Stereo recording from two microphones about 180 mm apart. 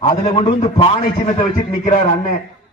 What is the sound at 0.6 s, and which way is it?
A man's voice, 40° left (ahead or behind).